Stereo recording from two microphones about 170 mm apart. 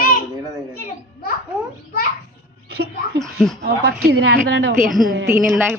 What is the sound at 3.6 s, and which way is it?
A woman's voice, 75° right (ahead or behind).